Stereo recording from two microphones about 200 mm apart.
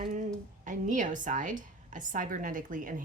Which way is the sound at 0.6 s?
40° right (ahead or behind).